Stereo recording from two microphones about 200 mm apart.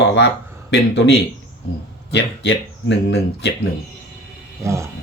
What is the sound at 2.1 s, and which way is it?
Speech, 60° left (ahead or behind).